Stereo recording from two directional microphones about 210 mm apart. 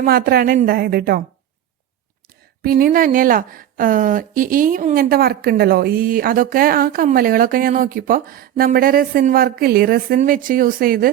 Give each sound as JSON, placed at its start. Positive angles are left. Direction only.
{"t": 0.0, "sound": "speech", "side_deg": -45}
{"t": 2.6, "sound": "speech", "side_deg": -45}